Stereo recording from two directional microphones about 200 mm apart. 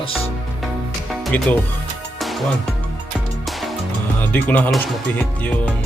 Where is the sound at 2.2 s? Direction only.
Centre (ahead or behind).